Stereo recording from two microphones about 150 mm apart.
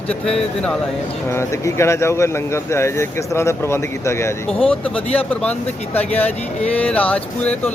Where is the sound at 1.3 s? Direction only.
20° left (ahead or behind).